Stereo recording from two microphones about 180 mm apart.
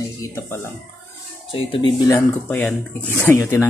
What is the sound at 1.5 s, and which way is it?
Speech, 30° left (ahead or behind).